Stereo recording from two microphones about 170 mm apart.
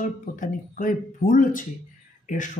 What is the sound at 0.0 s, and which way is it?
Speech, 50° left (ahead or behind).